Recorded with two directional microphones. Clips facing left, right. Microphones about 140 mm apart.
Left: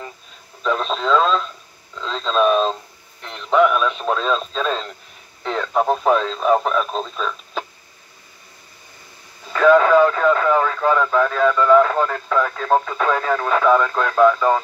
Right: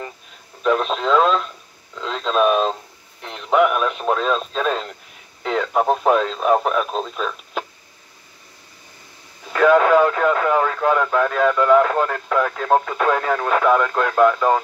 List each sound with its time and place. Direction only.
0.6 s radio: 10° right (ahead or behind)
5.5 s speech: 10° right (ahead or behind)
9.6 s speech: 15° right (ahead or behind)